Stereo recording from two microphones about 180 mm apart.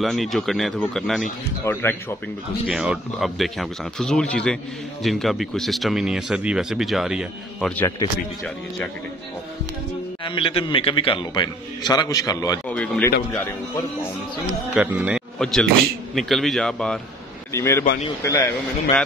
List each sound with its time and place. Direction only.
0.0 s speech: centre (ahead or behind)
1.6 s speech: 15° left (ahead or behind)
2.6 s speech: 5° right (ahead or behind)
10.2 s a man's voice: 30° left (ahead or behind)
12.6 s speech: 5° left (ahead or behind)
14.7 s speech: 10° right (ahead or behind)
17.5 s a man's voice: 15° left (ahead or behind)